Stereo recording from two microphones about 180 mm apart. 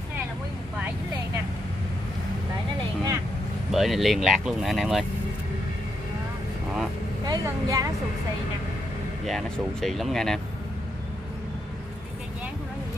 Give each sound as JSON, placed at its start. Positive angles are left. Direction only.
{"t": 3.7, "sound": "speech", "side_deg": 0}
{"t": 7.2, "sound": "speech", "side_deg": -20}
{"t": 9.2, "sound": "speech", "side_deg": 0}